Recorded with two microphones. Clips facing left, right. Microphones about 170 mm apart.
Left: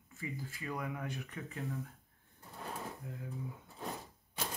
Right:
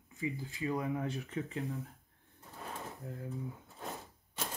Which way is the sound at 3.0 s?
35° right (ahead or behind).